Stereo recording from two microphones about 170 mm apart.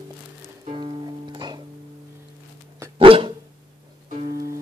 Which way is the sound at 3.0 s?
30° right (ahead or behind).